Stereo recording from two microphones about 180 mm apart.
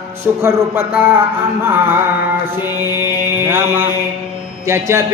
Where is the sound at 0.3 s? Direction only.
10° right (ahead or behind).